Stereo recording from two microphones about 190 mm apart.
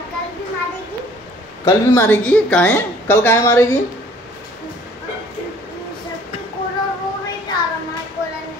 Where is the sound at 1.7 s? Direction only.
10° left (ahead or behind).